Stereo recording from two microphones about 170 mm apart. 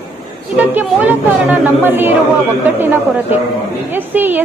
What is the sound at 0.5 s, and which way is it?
Speech, 10° right (ahead or behind).